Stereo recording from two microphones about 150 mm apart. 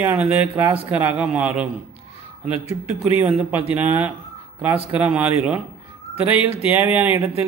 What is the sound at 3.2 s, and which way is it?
Speech, 15° right (ahead or behind).